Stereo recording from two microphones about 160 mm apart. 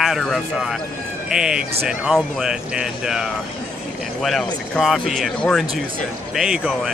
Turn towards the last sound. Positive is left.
turn(degrees=-5)  # may be behind; listen again after turning